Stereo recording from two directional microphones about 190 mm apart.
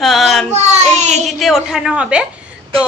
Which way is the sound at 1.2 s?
Centre (ahead or behind).